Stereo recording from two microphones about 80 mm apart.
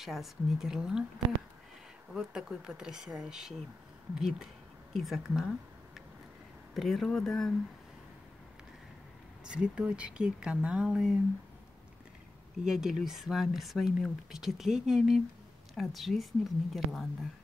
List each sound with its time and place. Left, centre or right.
0.0 s speech: centre
2.1 s speech: centre
6.7 s speech: centre
9.4 s speech: centre
12.6 s speech: centre